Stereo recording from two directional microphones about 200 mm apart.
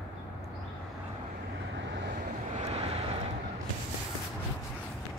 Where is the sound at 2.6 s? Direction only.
30° right (ahead or behind).